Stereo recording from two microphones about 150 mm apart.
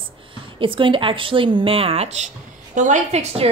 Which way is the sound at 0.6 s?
35° right (ahead or behind).